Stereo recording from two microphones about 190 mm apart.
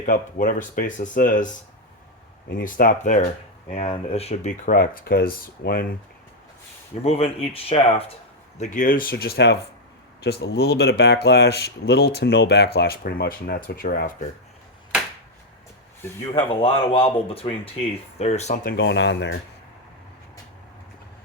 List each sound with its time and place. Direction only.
0.0 s speech: 45° left (ahead or behind)
2.6 s speech: 50° left (ahead or behind)
4.7 s speech: 55° left (ahead or behind)
7.0 s speech: 30° left (ahead or behind)
8.5 s speech: 40° left (ahead or behind)
16.3 s speech: 30° left (ahead or behind)
18.8 s speech: 70° left (ahead or behind)